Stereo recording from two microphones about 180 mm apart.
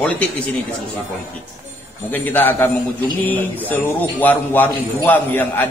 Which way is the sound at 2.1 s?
10° left (ahead or behind).